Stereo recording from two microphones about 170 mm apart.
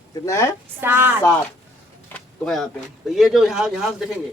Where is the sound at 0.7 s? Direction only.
10° right (ahead or behind).